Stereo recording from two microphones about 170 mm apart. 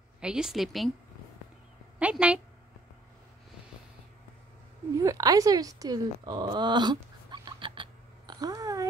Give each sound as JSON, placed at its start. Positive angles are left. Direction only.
{"t": 0.2, "sound": "a woman's voice", "side_deg": -5}
{"t": 2.0, "sound": "a woman's voice", "side_deg": -5}
{"t": 5.0, "sound": "a sound", "side_deg": -20}